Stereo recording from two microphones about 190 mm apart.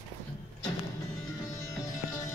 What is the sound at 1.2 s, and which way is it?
Music, 15° left (ahead or behind).